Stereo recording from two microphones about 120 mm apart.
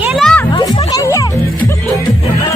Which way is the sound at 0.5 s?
35° left (ahead or behind).